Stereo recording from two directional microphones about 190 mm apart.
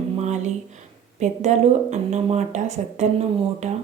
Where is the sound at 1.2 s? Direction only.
35° right (ahead or behind).